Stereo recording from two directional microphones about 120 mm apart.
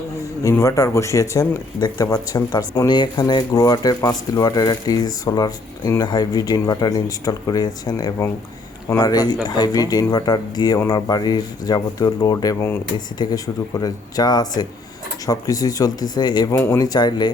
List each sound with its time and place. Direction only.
0.5 s speech: 25° left (ahead or behind)
16.5 s speech: 25° left (ahead or behind)